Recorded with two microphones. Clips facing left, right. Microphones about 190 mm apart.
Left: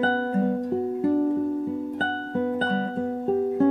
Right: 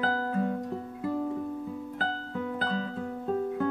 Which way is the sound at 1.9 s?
35° left (ahead or behind).